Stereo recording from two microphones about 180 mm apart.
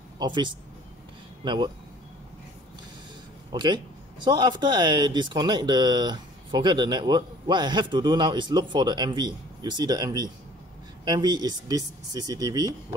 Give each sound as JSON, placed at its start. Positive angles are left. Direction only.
{"t": 0.2, "sound": "speech", "side_deg": -25}
{"t": 3.5, "sound": "speech", "side_deg": -25}